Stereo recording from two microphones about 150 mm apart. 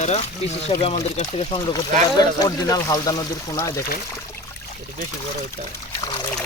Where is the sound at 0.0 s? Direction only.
45° left (ahead or behind); by 3.8 s 20° left (ahead or behind).